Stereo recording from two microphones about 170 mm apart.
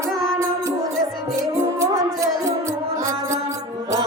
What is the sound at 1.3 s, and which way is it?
Music, 20° right (ahead or behind).